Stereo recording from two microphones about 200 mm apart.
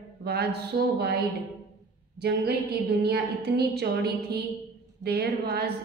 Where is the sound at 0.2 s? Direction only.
55° right (ahead or behind).